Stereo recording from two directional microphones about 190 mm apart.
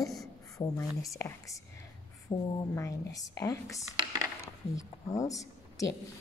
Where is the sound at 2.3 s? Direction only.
30° left (ahead or behind).